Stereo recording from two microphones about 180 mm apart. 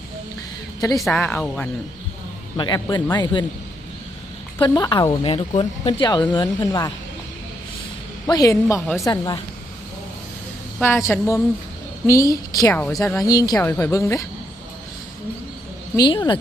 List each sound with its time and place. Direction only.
0.8 s speech: 20° left (ahead or behind)
1.0 s a woman's voice: 10° left (ahead or behind)
2.6 s speech: 25° left (ahead or behind)
4.6 s speech: 20° left (ahead or behind)
5.3 s speech: 35° left (ahead or behind); by 6.9 s 20° left (ahead or behind)
8.3 s speech: 20° left (ahead or behind)
10.8 s a woman's voice: 15° left (ahead or behind)
16.0 s speech: 25° left (ahead or behind)